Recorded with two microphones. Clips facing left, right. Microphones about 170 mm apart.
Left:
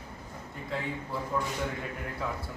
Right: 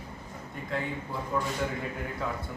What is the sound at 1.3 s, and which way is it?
Speech, centre (ahead or behind).